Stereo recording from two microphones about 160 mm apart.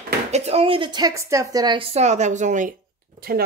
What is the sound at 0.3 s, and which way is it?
A woman's voice, 40° right (ahead or behind).